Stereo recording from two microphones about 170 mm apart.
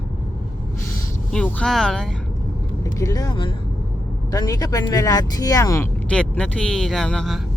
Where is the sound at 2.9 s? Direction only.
20° left (ahead or behind).